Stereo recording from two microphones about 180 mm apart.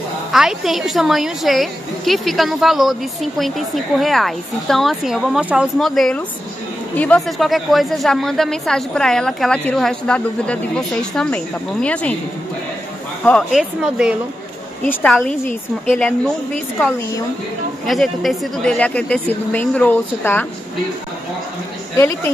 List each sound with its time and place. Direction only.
0.3 s a woman's voice: centre (ahead or behind)
13.2 s a woman's voice: 5° left (ahead or behind)
14.9 s a woman's voice: 10° left (ahead or behind)
17.8 s a woman's voice: centre (ahead or behind)
21.9 s a woman's voice: 15° left (ahead or behind)